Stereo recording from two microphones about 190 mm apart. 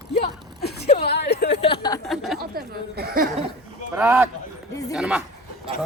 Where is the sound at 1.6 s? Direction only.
25° left (ahead or behind).